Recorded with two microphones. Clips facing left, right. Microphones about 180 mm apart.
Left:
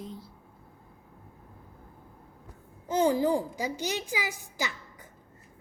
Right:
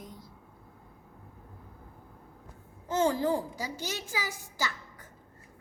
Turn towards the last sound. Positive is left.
turn(degrees=15)  # may be behind; listen again after turning